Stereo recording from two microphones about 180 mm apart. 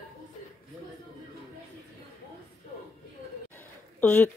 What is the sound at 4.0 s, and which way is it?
Speech, 10° left (ahead or behind).